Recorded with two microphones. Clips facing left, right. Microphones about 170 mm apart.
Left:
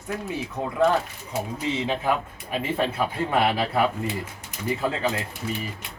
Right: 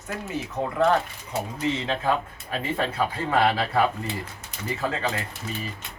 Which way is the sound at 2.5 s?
15° left (ahead or behind).